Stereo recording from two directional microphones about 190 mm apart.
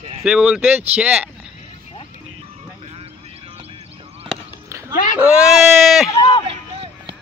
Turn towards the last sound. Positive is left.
turn(degrees=25)  # may be behind; listen again after turning